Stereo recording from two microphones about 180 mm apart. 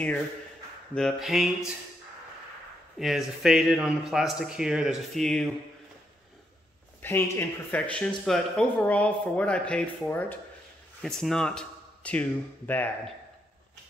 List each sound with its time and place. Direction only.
0.9 s speech: centre (ahead or behind)
3.0 s speech: centre (ahead or behind)
7.0 s speech: 15° left (ahead or behind)